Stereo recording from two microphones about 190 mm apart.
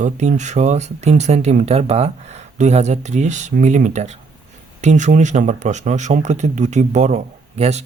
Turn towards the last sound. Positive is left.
turn(degrees=-35)  # may be behind; listen again after turning